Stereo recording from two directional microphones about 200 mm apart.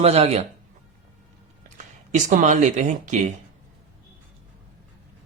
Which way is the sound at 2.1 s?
40° right (ahead or behind).